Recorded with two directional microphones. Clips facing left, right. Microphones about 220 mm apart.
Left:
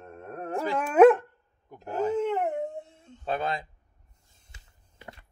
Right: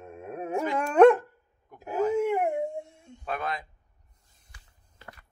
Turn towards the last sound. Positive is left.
turn(degrees=25)  # may be behind; listen again after turning